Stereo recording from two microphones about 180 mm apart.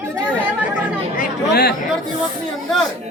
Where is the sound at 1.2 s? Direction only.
60° left (ahead or behind).